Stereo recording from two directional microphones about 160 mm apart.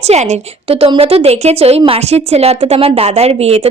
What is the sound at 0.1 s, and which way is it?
A woman's voice, 45° right (ahead or behind).